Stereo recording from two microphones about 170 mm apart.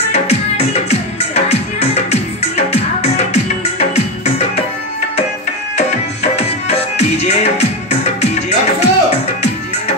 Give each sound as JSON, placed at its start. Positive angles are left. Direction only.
{"t": 0.1, "sound": "music", "side_deg": 40}
{"t": 6.3, "sound": "music", "side_deg": 40}